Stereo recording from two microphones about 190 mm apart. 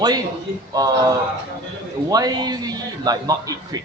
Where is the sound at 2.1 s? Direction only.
20° right (ahead or behind).